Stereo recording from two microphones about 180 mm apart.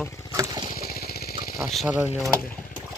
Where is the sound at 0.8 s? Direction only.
60° left (ahead or behind).